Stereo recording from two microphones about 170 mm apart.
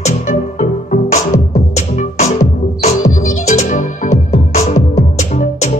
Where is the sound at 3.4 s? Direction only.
45° left (ahead or behind).